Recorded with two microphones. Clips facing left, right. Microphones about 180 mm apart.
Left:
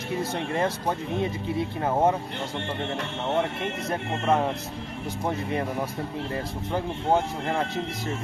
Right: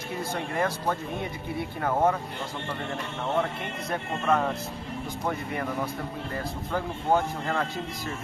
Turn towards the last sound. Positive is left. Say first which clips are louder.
# left 1 dB
turn(degrees=20)  # may be behind; listen again after turning